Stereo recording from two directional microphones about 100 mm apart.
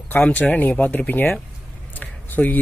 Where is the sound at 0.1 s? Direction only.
15° left (ahead or behind).